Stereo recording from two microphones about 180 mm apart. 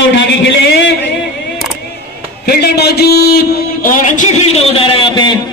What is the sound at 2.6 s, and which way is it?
A man's voice, 60° left (ahead or behind).